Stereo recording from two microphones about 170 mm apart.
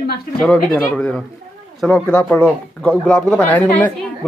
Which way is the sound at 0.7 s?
10° left (ahead or behind).